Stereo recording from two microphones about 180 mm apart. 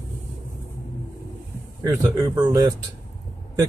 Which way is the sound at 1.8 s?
20° right (ahead or behind).